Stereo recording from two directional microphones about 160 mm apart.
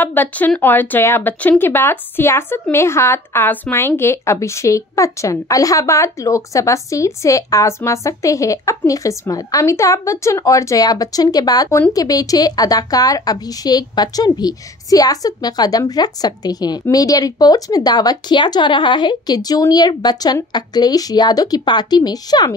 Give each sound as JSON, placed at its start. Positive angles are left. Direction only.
{"t": 0.0, "sound": "speech", "side_deg": 10}